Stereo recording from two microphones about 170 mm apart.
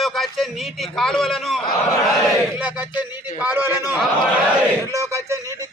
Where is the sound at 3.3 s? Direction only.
10° right (ahead or behind).